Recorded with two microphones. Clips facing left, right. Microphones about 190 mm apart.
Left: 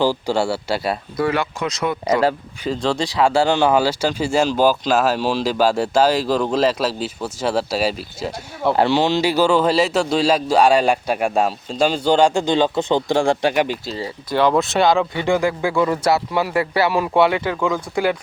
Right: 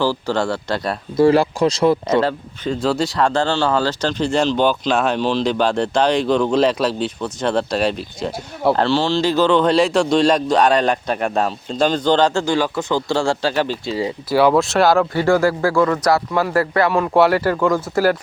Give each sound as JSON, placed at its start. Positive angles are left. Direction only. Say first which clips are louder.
{"t": 0.0, "sound": "speech", "louder": "left 1 dB", "side_deg": 15}
{"t": 1.1, "sound": "speech", "louder": "right 10 dB", "side_deg": -30}
{"t": 2.1, "sound": "speech", "louder": "right 1 dB", "side_deg": 5}
{"t": 2.8, "sound": "speech", "louder": "even", "side_deg": -5}
{"t": 13.9, "sound": "speech", "louder": "right 4 dB", "side_deg": -10}
{"t": 15.1, "sound": "speech", "louder": "right 3 dB", "side_deg": 20}
{"t": 16.3, "sound": "speech", "louder": "right 2 dB", "side_deg": 5}